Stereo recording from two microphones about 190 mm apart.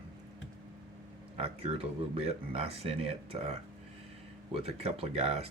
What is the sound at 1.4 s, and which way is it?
Speech, 30° right (ahead or behind).